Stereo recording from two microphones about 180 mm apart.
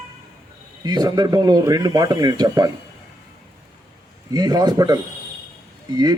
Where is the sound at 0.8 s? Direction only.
25° right (ahead or behind).